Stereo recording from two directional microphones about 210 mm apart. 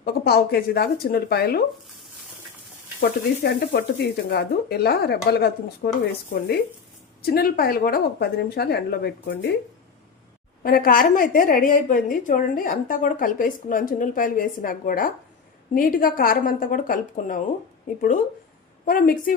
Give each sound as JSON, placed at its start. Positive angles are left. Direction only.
{"t": 0.0, "sound": "speech", "side_deg": 50}
{"t": 3.0, "sound": "speech", "side_deg": 50}
{"t": 7.2, "sound": "speech", "side_deg": 45}
{"t": 10.6, "sound": "a woman's voice", "side_deg": 45}